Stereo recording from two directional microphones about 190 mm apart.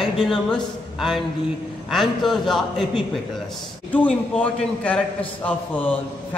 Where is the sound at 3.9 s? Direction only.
5° left (ahead or behind).